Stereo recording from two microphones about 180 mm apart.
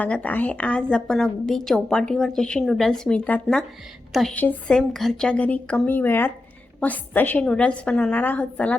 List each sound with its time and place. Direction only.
0.0 s a woman's voice: 10° left (ahead or behind)